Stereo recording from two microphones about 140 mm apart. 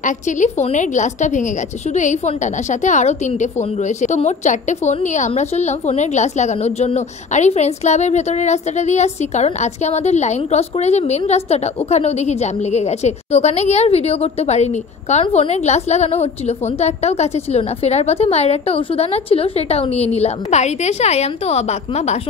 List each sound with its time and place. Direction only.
0.0 s a woman's voice: 55° left (ahead or behind)